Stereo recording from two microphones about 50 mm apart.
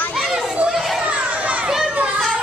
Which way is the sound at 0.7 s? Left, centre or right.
Centre.